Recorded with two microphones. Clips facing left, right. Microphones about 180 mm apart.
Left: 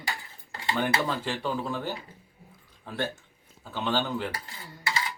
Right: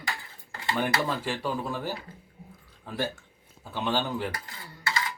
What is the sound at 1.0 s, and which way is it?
Speech, 10° right (ahead or behind).